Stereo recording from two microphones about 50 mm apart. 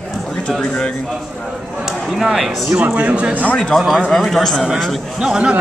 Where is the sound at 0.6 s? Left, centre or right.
Centre.